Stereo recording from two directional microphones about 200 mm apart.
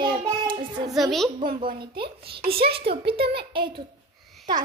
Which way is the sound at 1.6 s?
50° right (ahead or behind).